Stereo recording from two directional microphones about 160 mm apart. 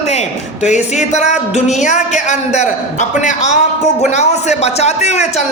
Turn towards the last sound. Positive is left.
turn(degrees=45)  # may be behind; listen again after turning